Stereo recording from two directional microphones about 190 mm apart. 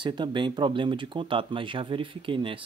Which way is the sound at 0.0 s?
25° right (ahead or behind).